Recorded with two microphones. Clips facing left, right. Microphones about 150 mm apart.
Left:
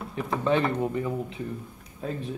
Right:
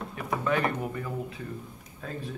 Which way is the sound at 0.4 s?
25° left (ahead or behind).